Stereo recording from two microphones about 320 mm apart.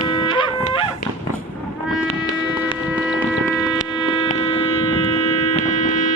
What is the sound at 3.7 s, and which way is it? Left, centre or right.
Hum, centre.